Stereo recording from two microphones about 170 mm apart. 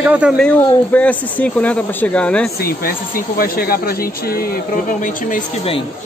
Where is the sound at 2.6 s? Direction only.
60° left (ahead or behind).